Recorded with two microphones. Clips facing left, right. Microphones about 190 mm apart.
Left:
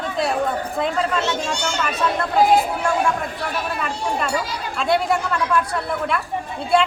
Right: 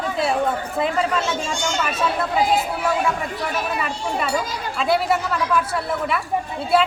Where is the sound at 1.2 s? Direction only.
70° left (ahead or behind).